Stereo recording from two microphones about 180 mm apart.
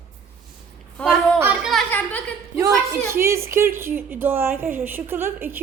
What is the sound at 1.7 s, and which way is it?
Speech, 10° left (ahead or behind).